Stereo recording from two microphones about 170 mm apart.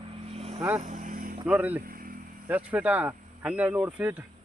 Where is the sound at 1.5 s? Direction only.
10° right (ahead or behind).